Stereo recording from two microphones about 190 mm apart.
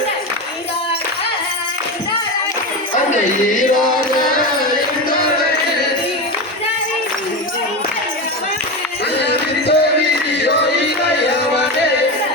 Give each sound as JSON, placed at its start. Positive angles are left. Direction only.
{"t": 9.2, "sound": "music", "side_deg": 60}